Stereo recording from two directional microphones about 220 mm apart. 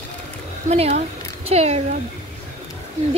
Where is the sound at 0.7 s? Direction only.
30° right (ahead or behind).